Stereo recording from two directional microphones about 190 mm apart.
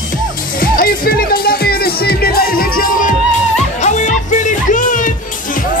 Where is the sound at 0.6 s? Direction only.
50° left (ahead or behind).